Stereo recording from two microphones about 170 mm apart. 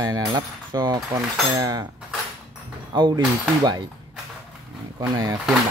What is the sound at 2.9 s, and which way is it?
Speech, 25° right (ahead or behind).